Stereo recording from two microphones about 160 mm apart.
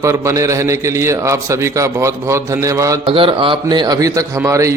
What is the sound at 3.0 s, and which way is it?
A man's voice, 35° right (ahead or behind).